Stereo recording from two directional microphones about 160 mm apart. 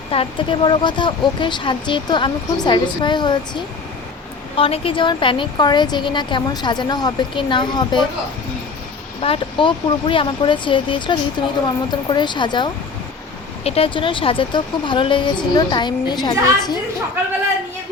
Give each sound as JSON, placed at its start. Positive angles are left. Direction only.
{"t": 0.1, "sound": "a woman's voice", "side_deg": 35}
{"t": 9.2, "sound": "a woman's voice", "side_deg": 35}